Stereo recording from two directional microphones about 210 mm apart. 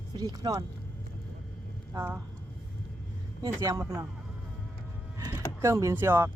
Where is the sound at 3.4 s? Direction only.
15° right (ahead or behind).